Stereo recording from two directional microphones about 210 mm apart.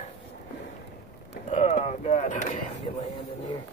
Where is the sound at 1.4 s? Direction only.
30° left (ahead or behind).